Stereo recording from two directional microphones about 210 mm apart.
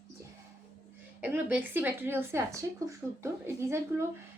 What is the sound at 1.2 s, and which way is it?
A woman's voice, 5° right (ahead or behind).